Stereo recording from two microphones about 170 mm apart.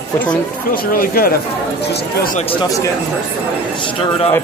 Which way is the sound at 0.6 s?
60° left (ahead or behind).